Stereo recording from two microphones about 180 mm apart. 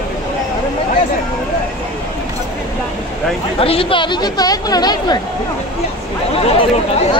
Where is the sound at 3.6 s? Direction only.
30° left (ahead or behind).